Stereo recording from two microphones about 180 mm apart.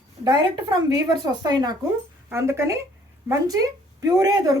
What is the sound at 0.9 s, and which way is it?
A woman's voice, 20° right (ahead or behind).